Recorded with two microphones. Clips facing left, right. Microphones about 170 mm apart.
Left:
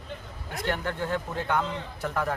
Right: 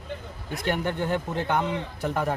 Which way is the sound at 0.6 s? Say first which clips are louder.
Right 3 dB; 20° right (ahead or behind).